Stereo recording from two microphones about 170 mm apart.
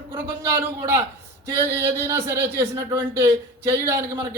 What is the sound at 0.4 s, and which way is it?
Speech, 15° right (ahead or behind).